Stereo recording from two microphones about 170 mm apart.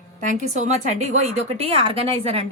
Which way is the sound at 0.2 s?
50° right (ahead or behind).